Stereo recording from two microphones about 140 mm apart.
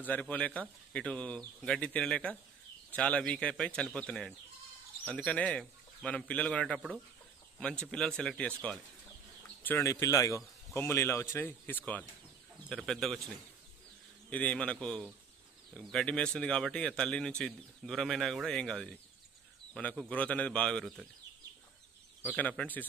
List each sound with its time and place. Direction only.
0.0 s speech: 10° left (ahead or behind)
7.8 s speech: 5° left (ahead or behind)
9.6 s speech: 15° left (ahead or behind)
14.3 s speech: 10° left (ahead or behind)
22.2 s speech: 10° left (ahead or behind)